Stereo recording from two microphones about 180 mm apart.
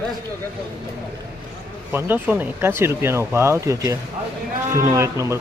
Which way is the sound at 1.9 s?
10° right (ahead or behind).